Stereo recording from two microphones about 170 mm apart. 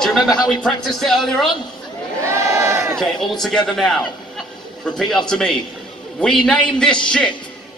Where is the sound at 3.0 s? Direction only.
Centre (ahead or behind).